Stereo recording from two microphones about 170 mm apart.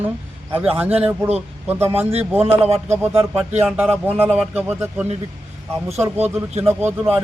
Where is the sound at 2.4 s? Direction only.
35° right (ahead or behind).